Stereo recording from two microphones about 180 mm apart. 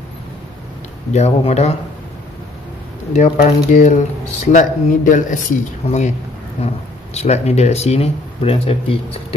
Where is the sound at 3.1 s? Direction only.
40° left (ahead or behind).